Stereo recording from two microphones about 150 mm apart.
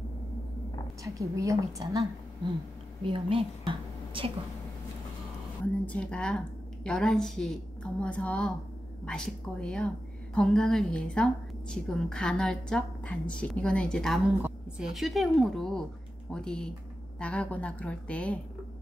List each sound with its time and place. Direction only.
1.0 s a woman's voice: 20° right (ahead or behind)
3.0 s a woman's voice: 35° right (ahead or behind)
5.9 s a woman's voice: 5° left (ahead or behind)